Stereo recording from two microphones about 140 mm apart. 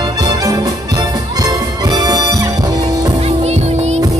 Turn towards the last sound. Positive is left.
turn(degrees=-50)  # may be behind; listen again after turning